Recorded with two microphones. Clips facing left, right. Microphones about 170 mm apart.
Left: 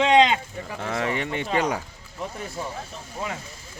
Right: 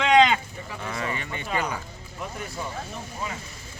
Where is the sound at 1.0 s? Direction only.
75° left (ahead or behind).